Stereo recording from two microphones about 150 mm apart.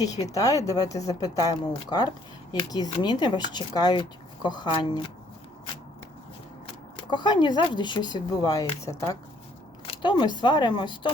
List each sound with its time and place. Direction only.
0.0 s speech: 25° left (ahead or behind)
7.1 s speech: 30° left (ahead or behind)